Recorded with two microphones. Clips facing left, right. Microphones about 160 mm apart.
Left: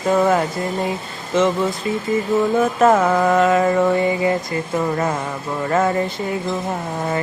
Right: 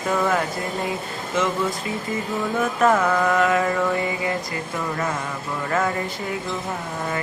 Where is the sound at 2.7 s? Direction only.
30° left (ahead or behind).